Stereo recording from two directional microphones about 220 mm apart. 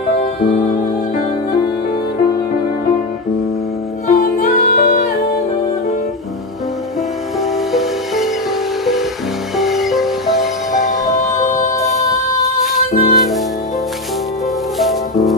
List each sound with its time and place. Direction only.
4.1 s music: 40° left (ahead or behind)
9.6 s music: centre (ahead or behind)
11.5 s music: 15° left (ahead or behind)
12.4 s music: centre (ahead or behind)
14.8 s music: centre (ahead or behind)